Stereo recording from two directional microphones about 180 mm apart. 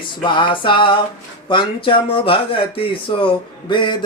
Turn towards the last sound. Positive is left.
turn(degrees=25)  # may be behind; listen again after turning